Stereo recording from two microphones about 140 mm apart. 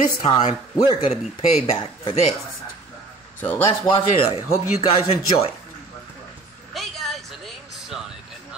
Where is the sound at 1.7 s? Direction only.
40° left (ahead or behind).